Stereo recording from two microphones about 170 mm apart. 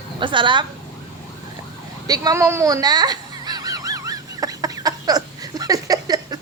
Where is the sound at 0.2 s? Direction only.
30° right (ahead or behind).